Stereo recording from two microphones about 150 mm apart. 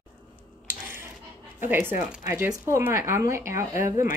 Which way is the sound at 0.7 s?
15° right (ahead or behind).